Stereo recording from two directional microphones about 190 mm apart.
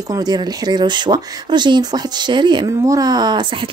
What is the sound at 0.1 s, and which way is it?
Speech, 20° right (ahead or behind).